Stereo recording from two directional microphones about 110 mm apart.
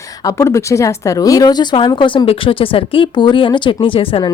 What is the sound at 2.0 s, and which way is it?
A woman's voice, 50° left (ahead or behind).